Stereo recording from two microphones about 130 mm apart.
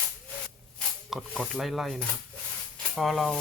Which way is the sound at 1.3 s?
Centre (ahead or behind).